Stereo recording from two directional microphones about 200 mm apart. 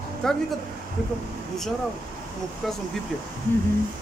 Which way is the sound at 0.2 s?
Centre (ahead or behind).